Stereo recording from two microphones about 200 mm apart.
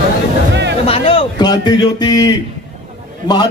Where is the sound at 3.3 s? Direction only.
20° left (ahead or behind).